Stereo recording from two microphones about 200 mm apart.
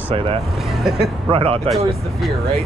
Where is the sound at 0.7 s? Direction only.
Centre (ahead or behind).